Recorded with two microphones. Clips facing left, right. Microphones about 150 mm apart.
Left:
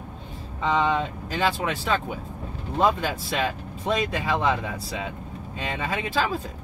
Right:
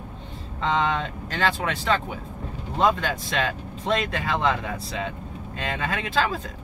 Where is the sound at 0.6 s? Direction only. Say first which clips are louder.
Left 1 dB; 10° left (ahead or behind).